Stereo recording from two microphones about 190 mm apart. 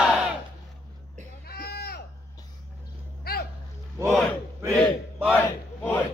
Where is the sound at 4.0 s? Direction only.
Centre (ahead or behind).